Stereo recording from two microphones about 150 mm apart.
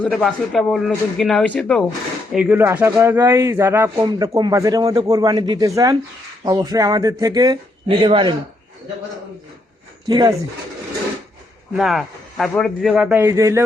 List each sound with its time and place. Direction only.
0.0 s speech: 5° left (ahead or behind)
2.3 s a man's voice: 10° right (ahead or behind); by 8.4 s 35° right (ahead or behind)
10.1 s a man's voice: 25° right (ahead or behind)
11.8 s speech: centre (ahead or behind)
13.2 s a man's voice: 20° right (ahead or behind)